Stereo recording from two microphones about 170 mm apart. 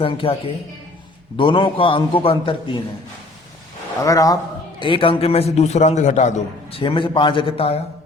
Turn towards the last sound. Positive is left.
turn(degrees=35)  # may be behind; listen again after turning